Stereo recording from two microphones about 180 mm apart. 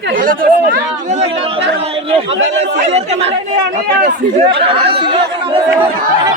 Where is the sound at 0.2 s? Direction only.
50° right (ahead or behind).